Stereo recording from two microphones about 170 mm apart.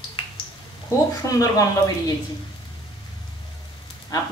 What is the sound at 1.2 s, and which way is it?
Speech, 20° left (ahead or behind).